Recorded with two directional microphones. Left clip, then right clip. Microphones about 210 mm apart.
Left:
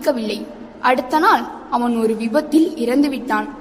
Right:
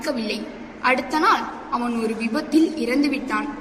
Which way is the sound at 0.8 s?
50° left (ahead or behind).